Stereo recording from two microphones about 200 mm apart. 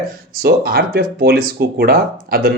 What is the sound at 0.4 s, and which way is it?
Speech, 50° right (ahead or behind).